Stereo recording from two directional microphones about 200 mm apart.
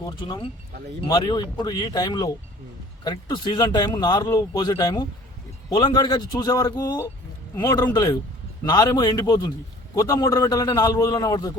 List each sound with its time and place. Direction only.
0.1 s a man's voice: 25° left (ahead or behind)